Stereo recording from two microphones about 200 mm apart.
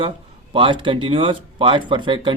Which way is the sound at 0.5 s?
25° right (ahead or behind).